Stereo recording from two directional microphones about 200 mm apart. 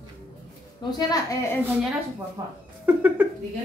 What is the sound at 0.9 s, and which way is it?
Speech, 15° left (ahead or behind).